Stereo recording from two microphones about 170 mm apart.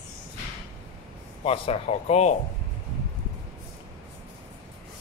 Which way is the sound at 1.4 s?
35° left (ahead or behind).